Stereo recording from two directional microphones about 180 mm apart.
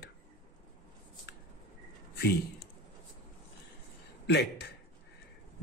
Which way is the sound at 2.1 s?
65° left (ahead or behind).